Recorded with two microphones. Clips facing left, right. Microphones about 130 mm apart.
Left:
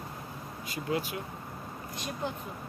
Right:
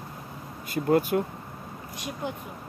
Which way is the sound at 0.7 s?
50° right (ahead or behind).